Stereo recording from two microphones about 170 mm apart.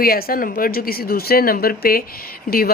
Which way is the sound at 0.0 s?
60° left (ahead or behind).